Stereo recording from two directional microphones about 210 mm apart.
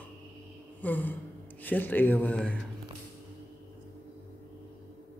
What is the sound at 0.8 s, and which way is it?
Speech, 10° left (ahead or behind).